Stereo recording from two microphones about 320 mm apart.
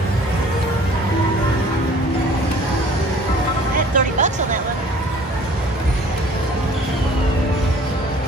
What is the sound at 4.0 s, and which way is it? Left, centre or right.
Music, right.